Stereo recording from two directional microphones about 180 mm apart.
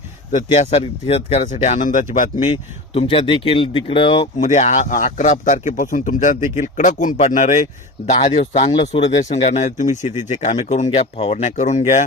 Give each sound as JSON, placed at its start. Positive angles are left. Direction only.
{"t": 0.4, "sound": "speech", "side_deg": 35}
{"t": 2.9, "sound": "speech", "side_deg": 30}